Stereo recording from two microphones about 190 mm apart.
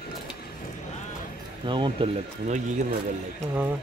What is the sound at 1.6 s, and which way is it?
Speech, 25° right (ahead or behind).